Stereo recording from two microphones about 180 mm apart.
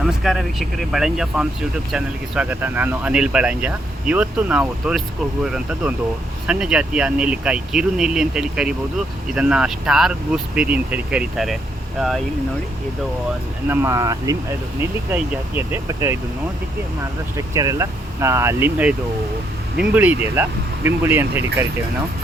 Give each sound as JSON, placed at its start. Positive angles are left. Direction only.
{"t": 0.0, "sound": "speech", "side_deg": 0}
{"t": 13.7, "sound": "speech", "side_deg": -15}
{"t": 17.3, "sound": "speech", "side_deg": -20}